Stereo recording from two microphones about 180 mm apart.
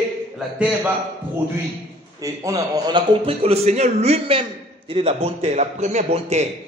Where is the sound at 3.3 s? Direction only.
35° right (ahead or behind).